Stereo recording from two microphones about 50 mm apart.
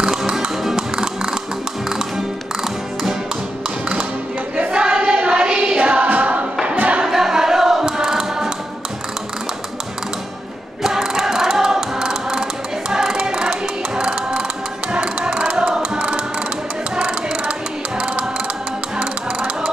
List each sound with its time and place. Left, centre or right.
0.0 s music: centre
4.6 s choir: right
6.0 s music: right
7.1 s choir: centre
10.8 s choir: centre
12.9 s music: centre